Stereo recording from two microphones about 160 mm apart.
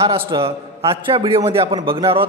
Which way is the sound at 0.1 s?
35° right (ahead or behind).